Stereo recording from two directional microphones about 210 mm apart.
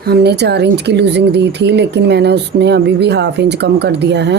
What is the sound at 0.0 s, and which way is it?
Speech, 50° right (ahead or behind).